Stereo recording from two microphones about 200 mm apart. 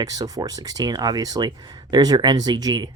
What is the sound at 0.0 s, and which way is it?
Speech, 20° right (ahead or behind).